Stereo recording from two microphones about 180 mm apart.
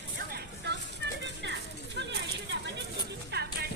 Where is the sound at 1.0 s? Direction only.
75° right (ahead or behind).